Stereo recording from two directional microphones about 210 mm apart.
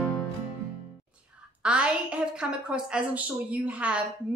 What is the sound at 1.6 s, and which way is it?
A woman's voice, 5° right (ahead or behind).